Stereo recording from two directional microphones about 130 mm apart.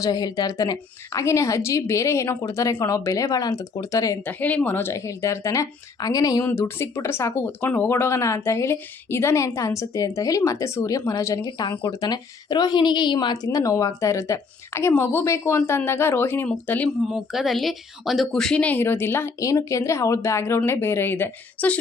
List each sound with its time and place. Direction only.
0.0 s speech: 30° left (ahead or behind)
4.3 s speech: 10° left (ahead or behind)
17.1 s speech: centre (ahead or behind); by 21.8 s 15° left (ahead or behind)